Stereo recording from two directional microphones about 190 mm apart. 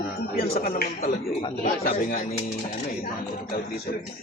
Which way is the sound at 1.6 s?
50° left (ahead or behind).